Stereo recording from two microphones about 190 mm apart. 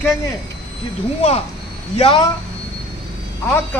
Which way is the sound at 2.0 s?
30° left (ahead or behind).